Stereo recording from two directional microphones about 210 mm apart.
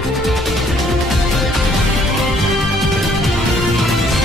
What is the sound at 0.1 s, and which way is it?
Music, centre (ahead or behind).